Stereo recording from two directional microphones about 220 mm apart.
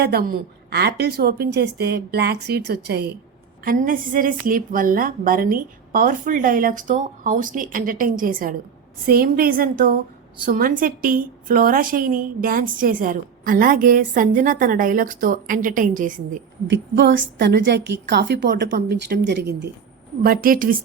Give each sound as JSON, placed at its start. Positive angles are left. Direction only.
{"t": 0.0, "sound": "a woman's voice", "side_deg": -45}
{"t": 16.6, "sound": "a woman's voice", "side_deg": -55}
{"t": 20.2, "sound": "a woman's voice", "side_deg": -40}